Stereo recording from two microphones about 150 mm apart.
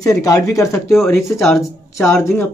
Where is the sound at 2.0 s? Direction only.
15° left (ahead or behind).